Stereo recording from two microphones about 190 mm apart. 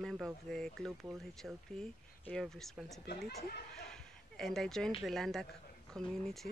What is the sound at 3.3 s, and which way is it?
Speech, 55° left (ahead or behind).